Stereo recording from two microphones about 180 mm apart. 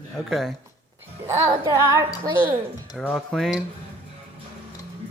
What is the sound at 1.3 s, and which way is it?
Child singing, 15° right (ahead or behind).